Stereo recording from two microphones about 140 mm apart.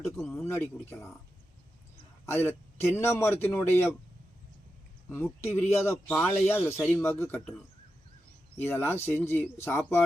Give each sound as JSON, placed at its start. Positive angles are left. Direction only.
{"t": 0.0, "sound": "speech", "side_deg": 0}
{"t": 0.4, "sound": "speech", "side_deg": 15}
{"t": 2.2, "sound": "speech", "side_deg": 15}
{"t": 5.1, "sound": "speech", "side_deg": 15}
{"t": 8.5, "sound": "speech", "side_deg": 15}